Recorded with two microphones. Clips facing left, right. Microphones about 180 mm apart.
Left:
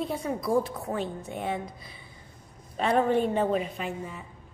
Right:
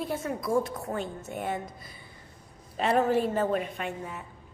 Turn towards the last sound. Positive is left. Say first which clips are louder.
# left 1 dB
turn(degrees=0)  # may be behind; listen again after turning